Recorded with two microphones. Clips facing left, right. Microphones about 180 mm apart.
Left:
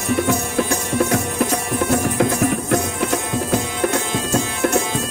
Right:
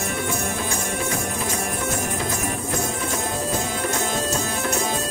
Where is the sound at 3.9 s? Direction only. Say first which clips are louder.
Left 5 dB; 45° right (ahead or behind).